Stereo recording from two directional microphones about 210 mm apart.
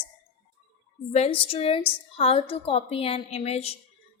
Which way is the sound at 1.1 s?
30° left (ahead or behind).